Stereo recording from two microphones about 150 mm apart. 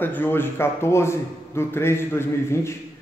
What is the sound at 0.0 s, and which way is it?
A man's voice, 15° left (ahead or behind).